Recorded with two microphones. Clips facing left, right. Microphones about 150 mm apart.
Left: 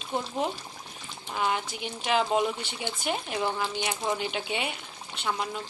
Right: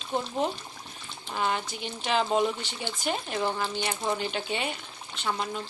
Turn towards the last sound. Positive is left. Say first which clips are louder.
# even
turn(degrees=5)  # may be behind; listen again after turning